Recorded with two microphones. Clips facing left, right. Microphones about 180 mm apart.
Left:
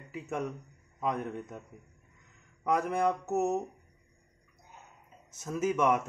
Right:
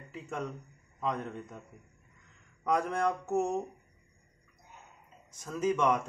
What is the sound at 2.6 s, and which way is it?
Mantra, 5° left (ahead or behind).